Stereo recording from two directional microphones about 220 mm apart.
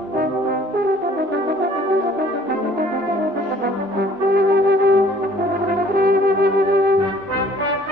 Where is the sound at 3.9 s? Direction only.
50° right (ahead or behind).